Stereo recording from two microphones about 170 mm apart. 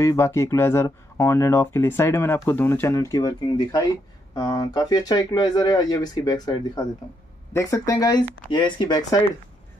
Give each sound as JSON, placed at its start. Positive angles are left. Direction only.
{"t": 0.0, "sound": "speech", "side_deg": 15}